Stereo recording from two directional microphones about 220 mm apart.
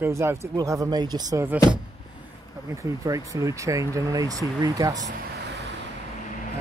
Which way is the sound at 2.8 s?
15° right (ahead or behind).